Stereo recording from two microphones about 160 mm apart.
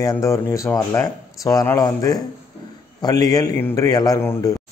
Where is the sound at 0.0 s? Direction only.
20° left (ahead or behind).